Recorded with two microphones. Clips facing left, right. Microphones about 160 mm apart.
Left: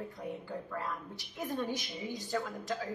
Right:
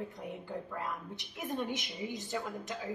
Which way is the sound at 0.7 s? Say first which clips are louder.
Even; 20° right (ahead or behind).